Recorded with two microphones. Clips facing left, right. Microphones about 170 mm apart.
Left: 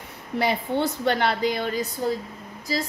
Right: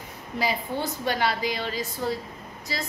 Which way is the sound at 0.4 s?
60° left (ahead or behind).